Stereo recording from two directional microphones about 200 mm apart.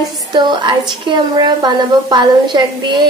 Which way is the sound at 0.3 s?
20° right (ahead or behind).